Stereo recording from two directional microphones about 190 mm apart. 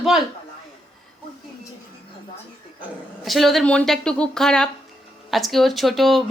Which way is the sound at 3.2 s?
Centre (ahead or behind).